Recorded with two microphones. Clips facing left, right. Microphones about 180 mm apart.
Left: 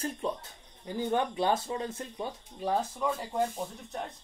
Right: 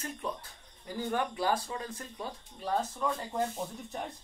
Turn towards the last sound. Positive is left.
turn(degrees=0)  # may be behind; listen again after turning